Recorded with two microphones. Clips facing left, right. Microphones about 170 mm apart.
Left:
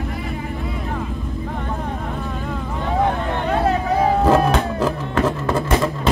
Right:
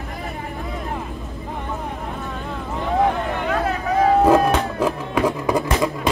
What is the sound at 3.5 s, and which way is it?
Vehicle, 30° left (ahead or behind).